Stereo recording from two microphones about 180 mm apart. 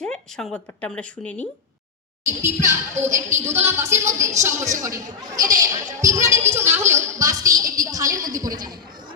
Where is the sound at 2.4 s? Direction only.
15° right (ahead or behind).